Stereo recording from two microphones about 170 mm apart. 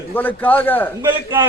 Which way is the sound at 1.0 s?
15° right (ahead or behind).